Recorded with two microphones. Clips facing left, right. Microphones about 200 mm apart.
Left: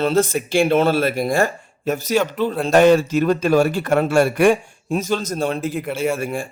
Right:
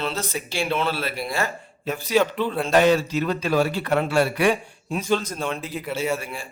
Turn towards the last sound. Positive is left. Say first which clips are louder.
# left 5 dB
turn(degrees=50)  # may be behind; listen again after turning